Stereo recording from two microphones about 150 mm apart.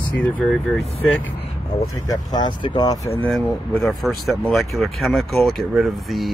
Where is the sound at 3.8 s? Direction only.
Centre (ahead or behind).